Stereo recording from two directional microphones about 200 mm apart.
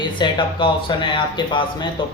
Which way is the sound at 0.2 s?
25° left (ahead or behind).